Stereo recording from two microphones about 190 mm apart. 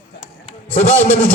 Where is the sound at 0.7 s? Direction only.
40° left (ahead or behind).